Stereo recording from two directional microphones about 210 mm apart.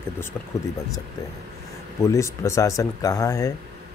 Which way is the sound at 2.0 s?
15° left (ahead or behind).